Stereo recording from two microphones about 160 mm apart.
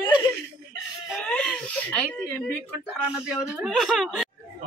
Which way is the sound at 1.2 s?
5° left (ahead or behind).